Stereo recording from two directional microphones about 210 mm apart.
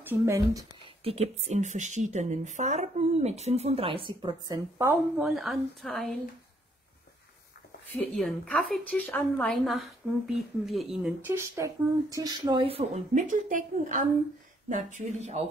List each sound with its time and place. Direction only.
0.0 s speech: 10° right (ahead or behind)
0.8 s speech: 30° right (ahead or behind)
4.9 s speech: centre (ahead or behind)
7.9 s speech: 5° left (ahead or behind); by 15.4 s 35° right (ahead or behind)